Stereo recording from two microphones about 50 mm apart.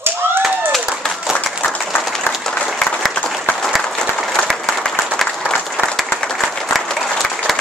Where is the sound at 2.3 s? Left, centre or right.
Left.